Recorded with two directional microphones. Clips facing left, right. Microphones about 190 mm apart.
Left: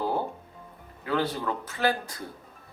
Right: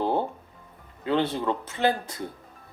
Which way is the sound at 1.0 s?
25° right (ahead or behind).